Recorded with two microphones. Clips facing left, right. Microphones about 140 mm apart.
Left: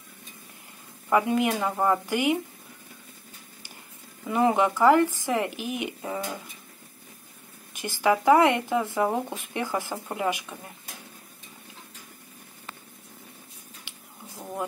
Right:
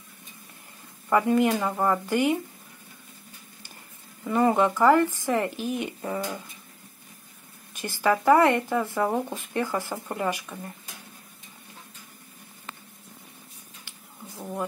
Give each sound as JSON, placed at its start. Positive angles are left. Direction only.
{"t": 1.1, "sound": "a woman's voice", "side_deg": 10}
{"t": 1.6, "sound": "speech", "side_deg": 0}
{"t": 1.9, "sound": "a woman's voice", "side_deg": 15}
{"t": 4.3, "sound": "a woman's voice", "side_deg": 15}
{"t": 8.0, "sound": "a woman's voice", "side_deg": 15}
{"t": 13.9, "sound": "a sound", "side_deg": 15}